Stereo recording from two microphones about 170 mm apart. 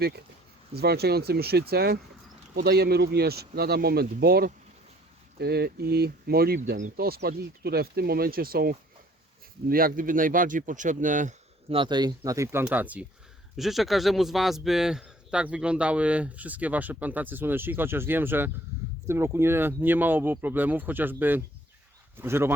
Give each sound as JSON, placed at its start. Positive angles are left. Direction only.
{"t": 0.7, "sound": "speech", "side_deg": -70}
{"t": 11.7, "sound": "speech", "side_deg": -30}